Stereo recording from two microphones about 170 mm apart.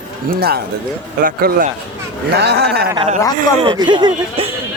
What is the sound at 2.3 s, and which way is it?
Speech, 75° right (ahead or behind).